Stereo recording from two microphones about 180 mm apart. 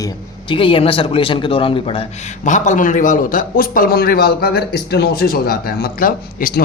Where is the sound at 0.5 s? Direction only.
30° left (ahead or behind).